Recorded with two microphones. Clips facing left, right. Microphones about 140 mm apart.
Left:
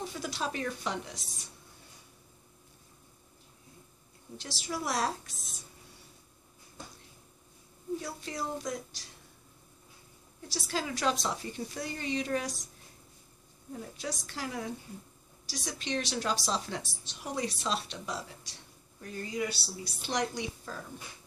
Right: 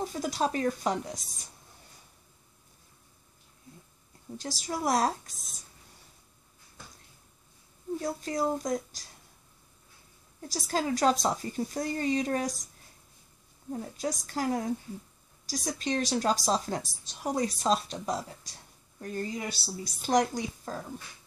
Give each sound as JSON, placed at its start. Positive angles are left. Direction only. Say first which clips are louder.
{"t": 0.0, "sound": "speech", "louder": "right 6 dB", "side_deg": -40}
{"t": 4.4, "sound": "speech", "louder": "right 4 dB", "side_deg": -40}
{"t": 8.0, "sound": "speech", "louder": "right 8 dB", "side_deg": -45}
{"t": 10.5, "sound": "speech", "louder": "right 5 dB", "side_deg": -40}
{"t": 13.7, "sound": "speech", "louder": "right 5 dB", "side_deg": -40}